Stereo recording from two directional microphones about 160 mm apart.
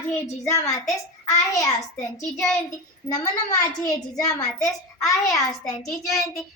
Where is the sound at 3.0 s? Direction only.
20° left (ahead or behind).